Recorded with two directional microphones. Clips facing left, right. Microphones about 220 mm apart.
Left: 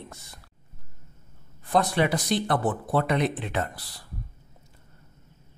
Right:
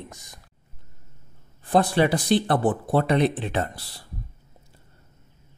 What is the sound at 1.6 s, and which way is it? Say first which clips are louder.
Speech: right 3 dB; 30° right (ahead or behind).